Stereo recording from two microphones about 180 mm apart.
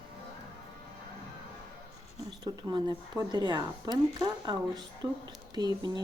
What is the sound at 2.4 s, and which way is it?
Speech, 20° right (ahead or behind).